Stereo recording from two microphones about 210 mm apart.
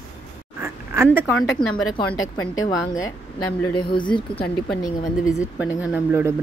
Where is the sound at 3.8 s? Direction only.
20° left (ahead or behind).